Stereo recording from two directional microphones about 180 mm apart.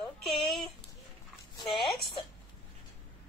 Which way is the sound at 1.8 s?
Centre (ahead or behind).